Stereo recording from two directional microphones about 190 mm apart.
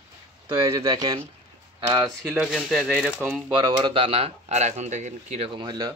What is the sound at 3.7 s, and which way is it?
Speech, 25° right (ahead or behind).